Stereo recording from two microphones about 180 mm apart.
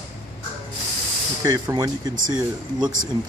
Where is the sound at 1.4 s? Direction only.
20° right (ahead or behind).